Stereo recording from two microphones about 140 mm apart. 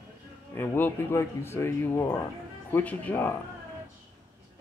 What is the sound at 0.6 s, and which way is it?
Speech, 15° left (ahead or behind).